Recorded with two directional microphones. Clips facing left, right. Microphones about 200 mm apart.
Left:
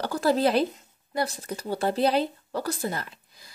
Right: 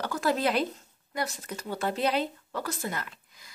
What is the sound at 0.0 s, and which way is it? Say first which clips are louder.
Speech: left 4 dB; 35° left (ahead or behind).